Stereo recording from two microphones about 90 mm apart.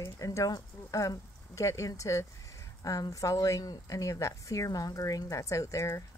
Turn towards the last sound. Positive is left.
turn(degrees=35)  # may be behind; listen again after turning